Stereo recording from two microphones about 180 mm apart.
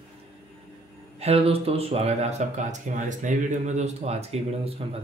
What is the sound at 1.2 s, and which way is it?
Speech, 35° right (ahead or behind).